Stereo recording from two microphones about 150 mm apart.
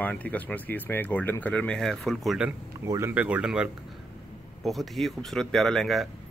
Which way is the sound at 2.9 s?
15° right (ahead or behind).